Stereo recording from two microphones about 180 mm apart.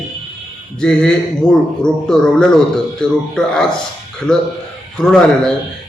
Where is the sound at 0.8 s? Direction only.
5° left (ahead or behind).